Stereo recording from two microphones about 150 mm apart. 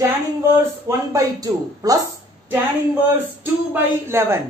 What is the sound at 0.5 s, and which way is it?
Speech, 20° right (ahead or behind).